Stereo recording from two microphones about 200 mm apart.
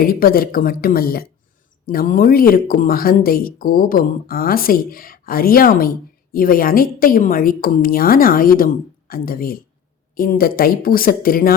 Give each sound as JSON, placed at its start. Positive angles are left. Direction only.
{"t": 0.0, "sound": "speech", "side_deg": 45}